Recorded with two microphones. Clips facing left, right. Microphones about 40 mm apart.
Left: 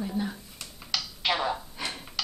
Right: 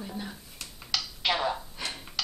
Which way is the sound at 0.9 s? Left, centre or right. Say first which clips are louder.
Even; centre.